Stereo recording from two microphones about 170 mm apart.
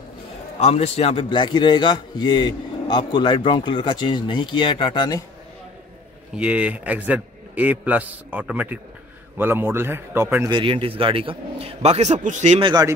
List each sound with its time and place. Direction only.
0.6 s a man's voice: 35° left (ahead or behind)
6.3 s a man's voice: 5° right (ahead or behind)
10.5 s a man's voice: 30° right (ahead or behind)
12.6 s speech: 25° right (ahead or behind)